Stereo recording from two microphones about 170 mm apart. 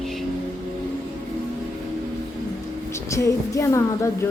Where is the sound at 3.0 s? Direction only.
15° left (ahead or behind).